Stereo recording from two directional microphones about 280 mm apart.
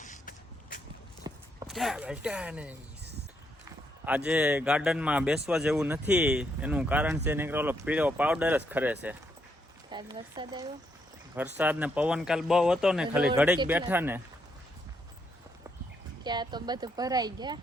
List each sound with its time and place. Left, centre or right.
0.0 s a sound: left
1.2 s walk: centre
1.6 s speech: centre
4.3 s speech: centre
16.2 s speech: centre